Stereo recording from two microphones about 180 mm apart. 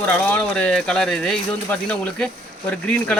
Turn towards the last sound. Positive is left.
turn(degrees=5)  # may be behind; listen again after turning